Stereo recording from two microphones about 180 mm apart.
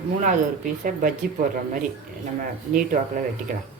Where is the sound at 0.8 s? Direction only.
50° right (ahead or behind).